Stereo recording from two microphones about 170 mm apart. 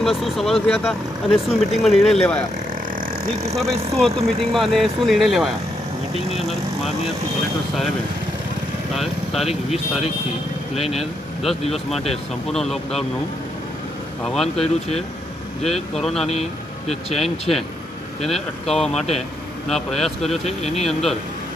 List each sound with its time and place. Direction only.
0.0 s speech: centre (ahead or behind)
3.5 s speech: centre (ahead or behind)
8.9 s speech: centre (ahead or behind)
10.7 s speech: 35° left (ahead or behind)
12.5 s speech: centre (ahead or behind)
14.2 s speech: centre (ahead or behind)
14.6 s speech: 40° left (ahead or behind)
16.0 s speech: centre (ahead or behind)
16.3 s speech: 40° left (ahead or behind)
17.2 s speech: centre (ahead or behind)
18.7 s speech: 5° left (ahead or behind)
20.4 s speech: 40° left (ahead or behind)
20.8 s speech: centre (ahead or behind)